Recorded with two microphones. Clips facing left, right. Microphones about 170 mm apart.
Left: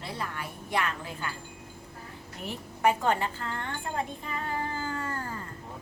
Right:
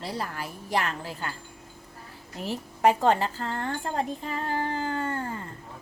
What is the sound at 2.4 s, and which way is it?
A woman's voice, 35° right (ahead or behind).